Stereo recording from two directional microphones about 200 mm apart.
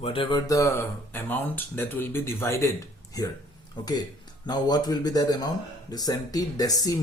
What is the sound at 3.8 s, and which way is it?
Speech, 20° left (ahead or behind).